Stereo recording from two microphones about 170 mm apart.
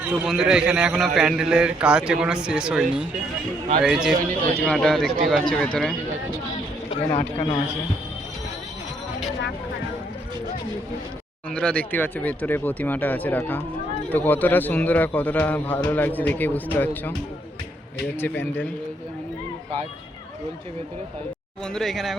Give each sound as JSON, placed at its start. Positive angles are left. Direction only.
{"t": 0.0, "sound": "a man's voice", "side_deg": -5}
{"t": 4.3, "sound": "a man's voice", "side_deg": 10}
{"t": 6.9, "sound": "a man's voice", "side_deg": 40}
{"t": 11.5, "sound": "speech", "side_deg": 10}
{"t": 18.2, "sound": "speech", "side_deg": 10}
{"t": 21.6, "sound": "a man's voice", "side_deg": 5}